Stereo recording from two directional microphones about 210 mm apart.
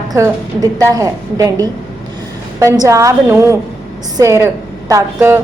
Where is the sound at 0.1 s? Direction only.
15° right (ahead or behind).